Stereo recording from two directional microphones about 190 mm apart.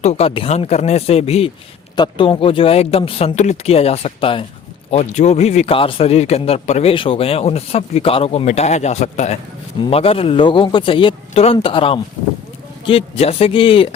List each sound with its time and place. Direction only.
0.0 s a man's voice: 35° left (ahead or behind)